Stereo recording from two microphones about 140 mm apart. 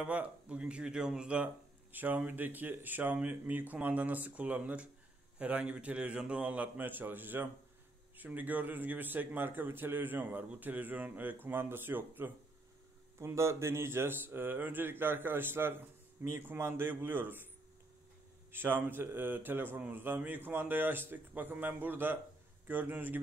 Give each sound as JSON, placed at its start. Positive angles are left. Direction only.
{"t": 0.0, "sound": "speech", "side_deg": -10}
{"t": 13.2, "sound": "speech", "side_deg": -20}
{"t": 18.5, "sound": "speech", "side_deg": -15}